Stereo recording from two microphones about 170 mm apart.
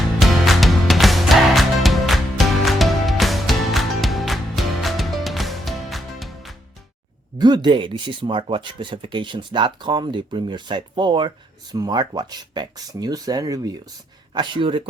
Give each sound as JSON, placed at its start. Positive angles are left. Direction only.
{"t": 0.2, "sound": "music", "side_deg": 0}
{"t": 7.3, "sound": "speech", "side_deg": -25}